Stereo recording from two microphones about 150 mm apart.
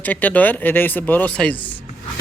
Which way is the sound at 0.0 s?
10° left (ahead or behind).